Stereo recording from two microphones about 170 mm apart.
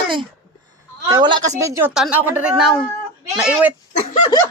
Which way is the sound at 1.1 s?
25° right (ahead or behind).